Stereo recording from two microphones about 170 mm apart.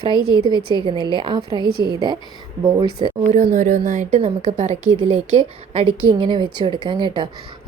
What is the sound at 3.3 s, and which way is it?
A woman's voice, 50° right (ahead or behind).